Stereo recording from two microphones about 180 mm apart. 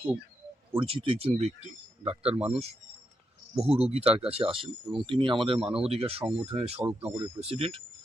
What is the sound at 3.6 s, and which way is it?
Speech, 35° right (ahead or behind).